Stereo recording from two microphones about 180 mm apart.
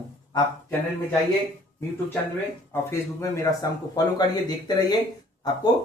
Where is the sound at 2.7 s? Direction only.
15° left (ahead or behind).